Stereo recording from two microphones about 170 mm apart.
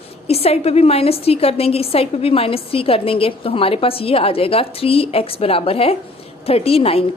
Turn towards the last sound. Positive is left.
turn(degrees=35)  # may be behind; listen again after turning